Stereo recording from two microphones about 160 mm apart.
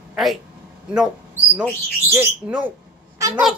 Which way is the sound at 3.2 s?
20° right (ahead or behind).